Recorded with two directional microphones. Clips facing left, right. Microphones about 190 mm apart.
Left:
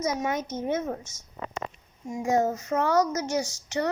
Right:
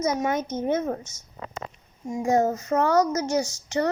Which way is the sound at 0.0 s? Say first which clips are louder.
Right 3 dB; 50° right (ahead or behind).